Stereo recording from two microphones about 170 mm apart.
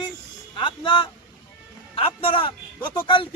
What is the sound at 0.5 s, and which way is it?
A man's voice, 30° left (ahead or behind).